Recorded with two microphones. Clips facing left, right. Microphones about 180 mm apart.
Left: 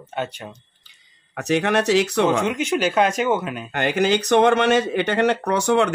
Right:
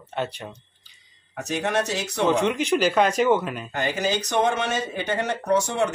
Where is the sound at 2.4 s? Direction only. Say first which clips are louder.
Even; 5° left (ahead or behind).